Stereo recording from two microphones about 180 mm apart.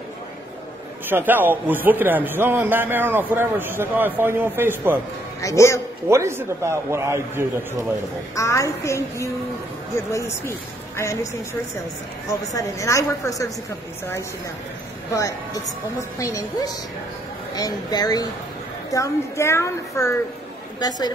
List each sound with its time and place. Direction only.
1.0 s a man's voice: 10° right (ahead or behind)
5.4 s a woman's voice: 15° left (ahead or behind)
6.0 s a man's voice: 15° right (ahead or behind)
8.4 s a woman's voice: 15° left (ahead or behind)
12.3 s a woman's voice: 15° left (ahead or behind)
15.1 s a woman's voice: 20° left (ahead or behind)